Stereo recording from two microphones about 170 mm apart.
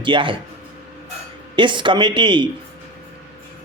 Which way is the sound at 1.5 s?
30° right (ahead or behind).